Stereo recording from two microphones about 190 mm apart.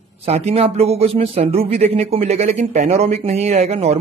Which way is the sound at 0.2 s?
35° right (ahead or behind).